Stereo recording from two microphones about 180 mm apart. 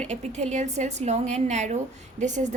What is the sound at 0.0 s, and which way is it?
A woman's voice, 40° right (ahead or behind).